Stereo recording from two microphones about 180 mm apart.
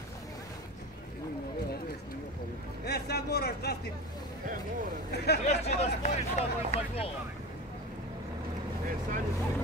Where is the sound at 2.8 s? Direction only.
60° left (ahead or behind).